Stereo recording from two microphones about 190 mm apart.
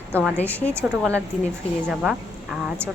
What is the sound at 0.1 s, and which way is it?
Speech, 10° right (ahead or behind).